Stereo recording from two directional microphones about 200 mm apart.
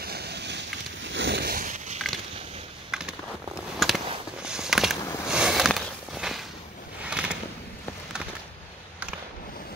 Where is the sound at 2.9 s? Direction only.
5° right (ahead or behind).